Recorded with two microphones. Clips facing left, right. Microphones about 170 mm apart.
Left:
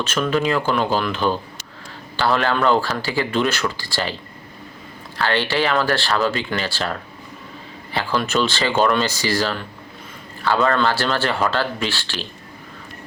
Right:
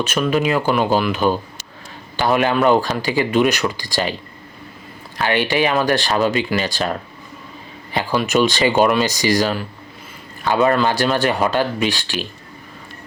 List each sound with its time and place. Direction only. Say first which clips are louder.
0.0 s speech: right 2 dB; 15° right (ahead or behind)
5.1 s speech: right 2 dB; 15° right (ahead or behind)
7.9 s speech: right 3 dB; 15° right (ahead or behind)